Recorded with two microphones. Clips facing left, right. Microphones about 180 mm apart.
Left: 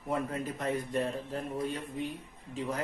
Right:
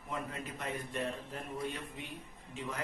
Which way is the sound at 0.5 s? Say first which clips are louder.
Left 6 dB; 35° left (ahead or behind).